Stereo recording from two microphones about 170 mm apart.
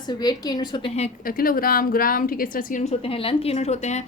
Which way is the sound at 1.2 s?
60° left (ahead or behind).